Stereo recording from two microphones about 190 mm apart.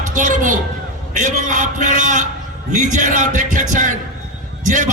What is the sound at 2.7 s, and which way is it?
A man's voice, 40° right (ahead or behind).